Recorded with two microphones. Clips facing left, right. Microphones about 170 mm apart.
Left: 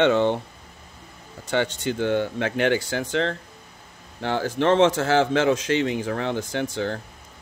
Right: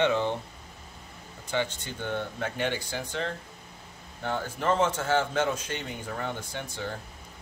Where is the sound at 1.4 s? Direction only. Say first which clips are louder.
Left 7 dB; 80° left.